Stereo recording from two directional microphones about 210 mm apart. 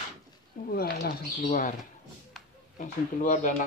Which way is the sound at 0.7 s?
50° left (ahead or behind).